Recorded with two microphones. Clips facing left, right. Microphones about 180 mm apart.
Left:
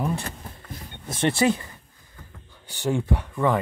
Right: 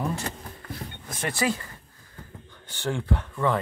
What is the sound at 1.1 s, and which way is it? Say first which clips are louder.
Speech: left 6 dB; 25° left (ahead or behind).